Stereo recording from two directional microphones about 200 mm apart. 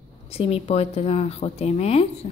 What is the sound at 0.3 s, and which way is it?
Speech, 30° left (ahead or behind).